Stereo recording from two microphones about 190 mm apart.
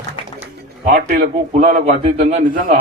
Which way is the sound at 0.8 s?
45° right (ahead or behind).